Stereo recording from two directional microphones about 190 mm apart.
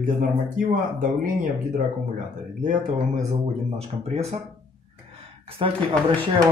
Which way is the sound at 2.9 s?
35° right (ahead or behind).